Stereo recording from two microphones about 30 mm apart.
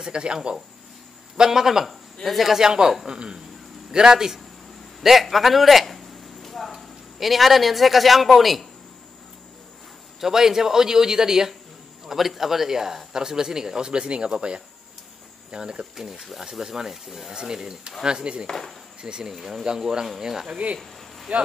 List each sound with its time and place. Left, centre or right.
0.0 s speech: right
1.3 s speech: centre
2.6 s speech: right
5.0 s a sound: centre
6.7 s speech: centre
10.2 s speech: centre
12.1 s speech: centre
13.9 s speech: right
16.6 s speech: centre
17.3 s speech: right
19.3 s speech: centre
19.6 s speech: right
21.3 s speech: right